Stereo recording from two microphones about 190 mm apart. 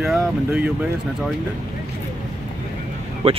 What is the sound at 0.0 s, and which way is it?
Speech, centre (ahead or behind).